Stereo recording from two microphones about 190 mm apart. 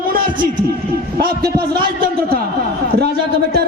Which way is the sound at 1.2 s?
55° right (ahead or behind).